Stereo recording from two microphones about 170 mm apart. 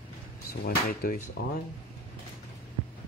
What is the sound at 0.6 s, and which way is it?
Speech, 60° left (ahead or behind).